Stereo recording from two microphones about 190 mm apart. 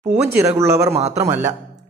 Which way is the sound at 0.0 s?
35° right (ahead or behind).